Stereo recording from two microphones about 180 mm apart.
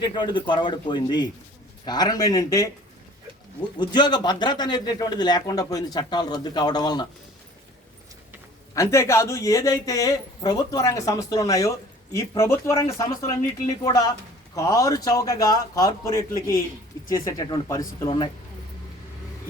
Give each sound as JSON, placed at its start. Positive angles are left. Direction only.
{"t": 0.0, "sound": "a man's voice", "side_deg": 25}
{"t": 3.8, "sound": "a man's voice", "side_deg": 25}
{"t": 8.7, "sound": "a man's voice", "side_deg": 15}